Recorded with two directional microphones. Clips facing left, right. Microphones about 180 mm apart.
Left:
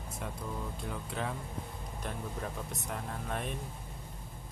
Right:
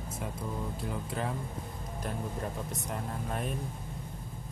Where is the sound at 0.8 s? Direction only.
Centre (ahead or behind).